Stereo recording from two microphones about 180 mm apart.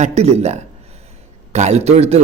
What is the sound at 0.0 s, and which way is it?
A man's voice, 35° right (ahead or behind).